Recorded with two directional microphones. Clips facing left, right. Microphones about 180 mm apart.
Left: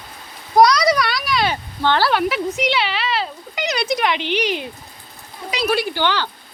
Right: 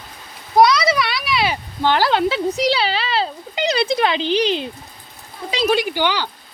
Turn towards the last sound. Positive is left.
turn(degrees=-15)  # may be behind; listen again after turning